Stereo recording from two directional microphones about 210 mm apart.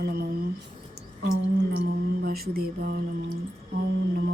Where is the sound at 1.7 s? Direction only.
50° right (ahead or behind).